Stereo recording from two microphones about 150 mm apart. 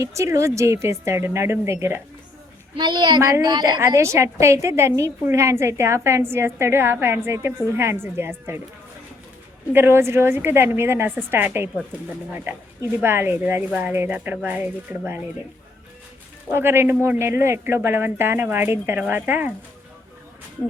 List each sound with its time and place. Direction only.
0.0 s a woman's voice: 20° right (ahead or behind)
2.7 s a woman's voice: 30° right (ahead or behind); by 8.6 s 15° right (ahead or behind)
9.7 s speech: 15° right (ahead or behind)
13.0 s speech: 15° right (ahead or behind)
16.5 s speech: 15° right (ahead or behind)